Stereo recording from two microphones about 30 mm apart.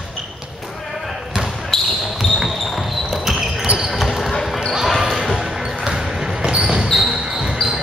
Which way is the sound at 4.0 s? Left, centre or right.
Centre.